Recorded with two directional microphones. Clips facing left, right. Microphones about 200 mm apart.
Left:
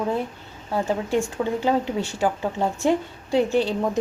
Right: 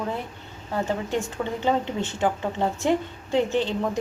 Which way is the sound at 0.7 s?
10° left (ahead or behind).